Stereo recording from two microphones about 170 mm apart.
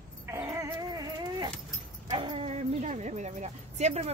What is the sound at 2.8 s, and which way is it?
Speech, 45° right (ahead or behind).